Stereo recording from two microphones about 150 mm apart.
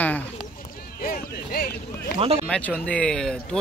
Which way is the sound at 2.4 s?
10° left (ahead or behind).